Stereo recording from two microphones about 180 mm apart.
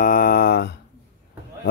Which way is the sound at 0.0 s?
50° left (ahead or behind).